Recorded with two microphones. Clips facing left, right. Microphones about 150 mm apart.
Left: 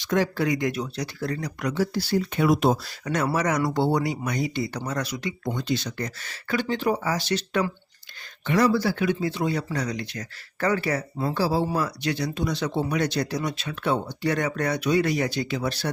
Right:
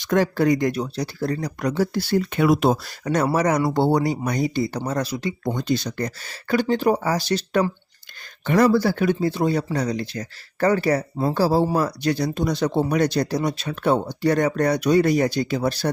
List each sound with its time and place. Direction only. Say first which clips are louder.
0.0 s speech: right 4 dB; 50° right (ahead or behind); by 2.7 s 70° right (ahead or behind)
3.0 s speech: right 7 dB; 35° right (ahead or behind)
5.5 s speech: right 4 dB; 40° right (ahead or behind)
8.4 s speech: right 4 dB; 50° right (ahead or behind)